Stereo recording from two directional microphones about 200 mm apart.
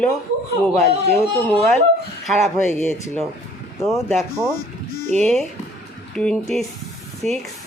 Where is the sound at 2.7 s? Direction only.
35° right (ahead or behind).